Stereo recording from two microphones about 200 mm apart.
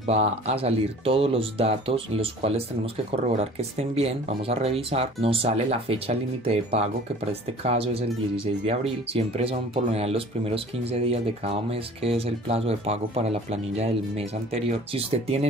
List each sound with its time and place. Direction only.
0.0 s speech: 35° right (ahead or behind)